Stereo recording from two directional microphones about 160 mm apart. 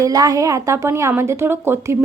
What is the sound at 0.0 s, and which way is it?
A woman's voice, 20° right (ahead or behind).